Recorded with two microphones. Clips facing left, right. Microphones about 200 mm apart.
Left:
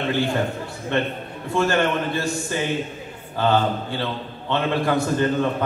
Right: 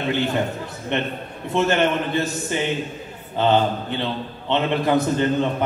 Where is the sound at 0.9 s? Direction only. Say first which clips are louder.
Left 1 dB; 20° right (ahead or behind).